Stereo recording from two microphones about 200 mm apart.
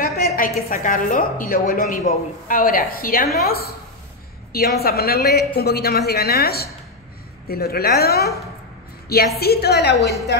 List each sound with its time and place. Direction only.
0.0 s a woman's voice: 45° left (ahead or behind)
9.4 s a woman's voice: 50° left (ahead or behind)